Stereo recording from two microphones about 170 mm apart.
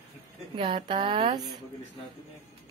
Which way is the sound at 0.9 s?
40° right (ahead or behind).